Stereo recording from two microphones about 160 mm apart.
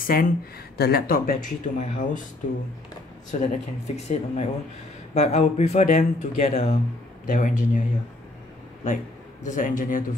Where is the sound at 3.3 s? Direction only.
55° left (ahead or behind).